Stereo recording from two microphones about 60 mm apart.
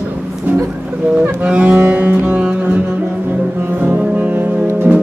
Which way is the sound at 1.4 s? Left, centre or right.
Right.